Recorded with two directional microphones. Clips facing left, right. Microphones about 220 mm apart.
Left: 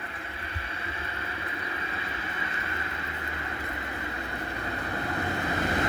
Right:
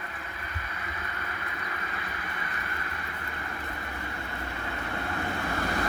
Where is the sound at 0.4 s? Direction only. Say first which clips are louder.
Left 2 dB; 30° left (ahead or behind).